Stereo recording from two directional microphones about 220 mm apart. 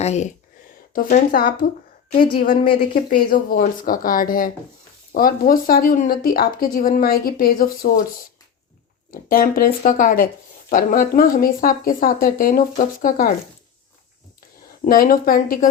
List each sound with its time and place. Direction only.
0.0 s speech: 30° left (ahead or behind)
9.0 s speech: 40° left (ahead or behind)
14.8 s speech: 40° left (ahead or behind)